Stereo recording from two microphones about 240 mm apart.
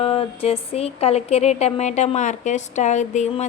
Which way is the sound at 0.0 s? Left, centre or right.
Left.